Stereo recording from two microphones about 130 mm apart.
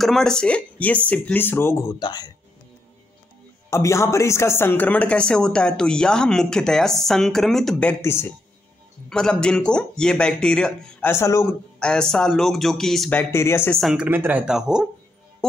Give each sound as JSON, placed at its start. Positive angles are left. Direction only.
{"t": 0.0, "sound": "speech", "side_deg": 5}
{"t": 2.0, "sound": "speech", "side_deg": 35}
{"t": 3.7, "sound": "speech", "side_deg": 20}
{"t": 8.0, "sound": "speech", "side_deg": 20}
{"t": 9.1, "sound": "speech", "side_deg": 5}
{"t": 11.1, "sound": "speech", "side_deg": 20}
{"t": 11.8, "sound": "speech", "side_deg": 5}
{"t": 13.1, "sound": "speech", "side_deg": 20}
{"t": 13.7, "sound": "speech", "side_deg": 0}
{"t": 14.0, "sound": "speech", "side_deg": -15}